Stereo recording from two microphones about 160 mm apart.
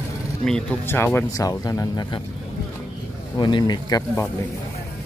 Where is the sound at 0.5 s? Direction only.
5° left (ahead or behind); by 2.2 s 30° left (ahead or behind).